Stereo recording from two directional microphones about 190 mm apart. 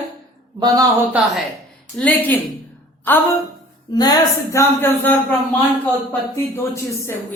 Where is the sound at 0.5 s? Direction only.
20° right (ahead or behind).